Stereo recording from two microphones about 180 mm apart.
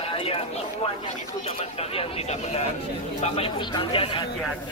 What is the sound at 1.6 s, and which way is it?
Speech, 35° left (ahead or behind).